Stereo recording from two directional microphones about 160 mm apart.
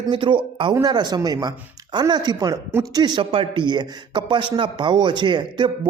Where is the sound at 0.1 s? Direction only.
30° right (ahead or behind).